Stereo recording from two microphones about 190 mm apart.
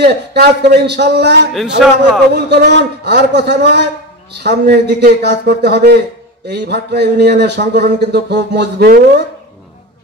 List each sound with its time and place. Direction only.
0.0 s a man's voice: 60° right (ahead or behind)
1.5 s a man's voice: centre (ahead or behind)
2.3 s a man's voice: 60° right (ahead or behind)